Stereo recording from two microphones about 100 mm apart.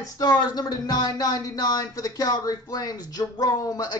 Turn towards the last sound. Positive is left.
turn(degrees=40)  # may be behind; listen again after turning